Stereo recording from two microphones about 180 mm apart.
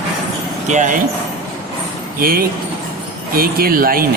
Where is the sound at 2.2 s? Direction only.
55° right (ahead or behind).